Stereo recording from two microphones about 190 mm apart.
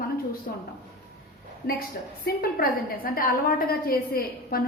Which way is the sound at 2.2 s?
50° left (ahead or behind).